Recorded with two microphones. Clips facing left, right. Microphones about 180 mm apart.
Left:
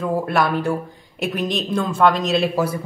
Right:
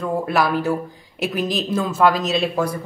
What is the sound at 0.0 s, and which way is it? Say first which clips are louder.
Speech: even; centre (ahead or behind).